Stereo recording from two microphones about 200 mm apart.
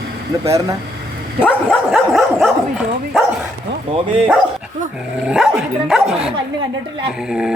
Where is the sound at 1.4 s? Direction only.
5° left (ahead or behind).